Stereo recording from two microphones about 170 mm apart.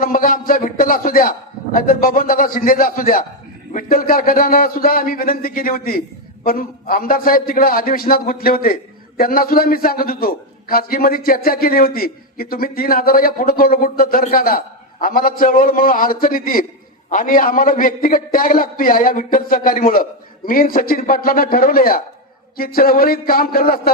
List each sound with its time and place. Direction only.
0.0 s a man's voice: 55° left (ahead or behind)